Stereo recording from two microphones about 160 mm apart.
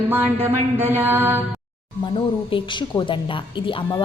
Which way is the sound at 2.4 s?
30° left (ahead or behind).